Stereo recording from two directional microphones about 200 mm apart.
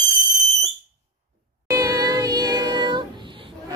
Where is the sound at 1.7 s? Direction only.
15° right (ahead or behind).